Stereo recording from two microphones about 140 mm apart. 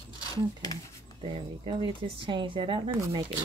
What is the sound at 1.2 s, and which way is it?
Speech, 40° right (ahead or behind).